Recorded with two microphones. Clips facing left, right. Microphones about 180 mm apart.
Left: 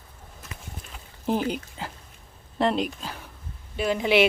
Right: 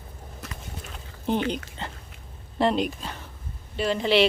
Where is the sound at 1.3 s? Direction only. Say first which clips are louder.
Even; 5° left (ahead or behind).